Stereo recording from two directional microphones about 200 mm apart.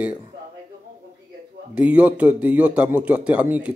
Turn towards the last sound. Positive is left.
turn(degrees=-5)  # may be behind; listen again after turning